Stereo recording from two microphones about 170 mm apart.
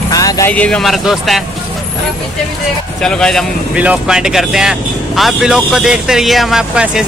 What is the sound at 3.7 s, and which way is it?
Speech, 5° right (ahead or behind).